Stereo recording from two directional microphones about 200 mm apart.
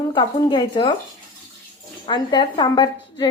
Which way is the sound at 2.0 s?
25° left (ahead or behind).